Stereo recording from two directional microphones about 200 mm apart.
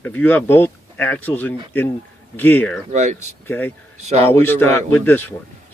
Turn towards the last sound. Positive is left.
turn(degrees=10)  # may be behind; listen again after turning